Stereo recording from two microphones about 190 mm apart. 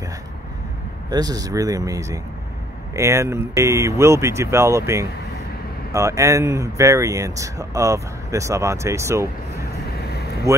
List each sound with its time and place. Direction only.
1.1 s speech: 20° right (ahead or behind)